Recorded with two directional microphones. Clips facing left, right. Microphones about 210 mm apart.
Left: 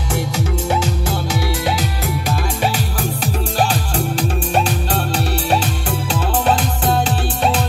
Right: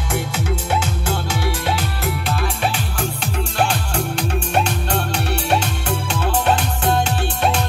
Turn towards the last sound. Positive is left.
turn(degrees=35)  # may be behind; listen again after turning